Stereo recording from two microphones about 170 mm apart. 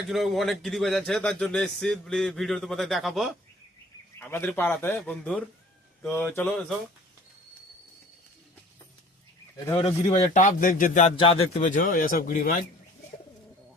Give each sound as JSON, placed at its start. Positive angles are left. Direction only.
{"t": 0.1, "sound": "a man's voice", "side_deg": 0}
{"t": 4.1, "sound": "a man's voice", "side_deg": 15}
{"t": 9.8, "sound": "speech", "side_deg": 45}
{"t": 11.2, "sound": "speech", "side_deg": 35}